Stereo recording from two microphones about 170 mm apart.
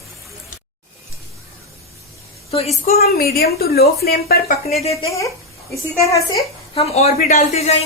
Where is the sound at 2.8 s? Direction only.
65° left (ahead or behind).